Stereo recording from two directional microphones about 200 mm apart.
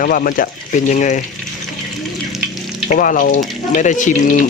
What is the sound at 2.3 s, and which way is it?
Frying, centre (ahead or behind).